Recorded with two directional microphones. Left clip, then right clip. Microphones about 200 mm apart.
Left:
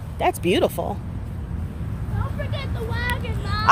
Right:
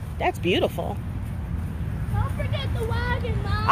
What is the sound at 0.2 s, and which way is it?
Speech, 15° left (ahead or behind).